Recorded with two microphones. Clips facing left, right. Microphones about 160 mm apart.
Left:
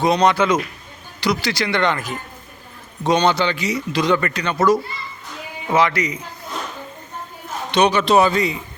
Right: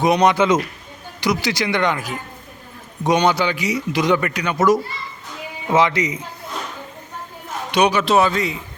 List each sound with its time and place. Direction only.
0.0 s a man's voice: 15° right (ahead or behind)
7.7 s speech: 10° right (ahead or behind)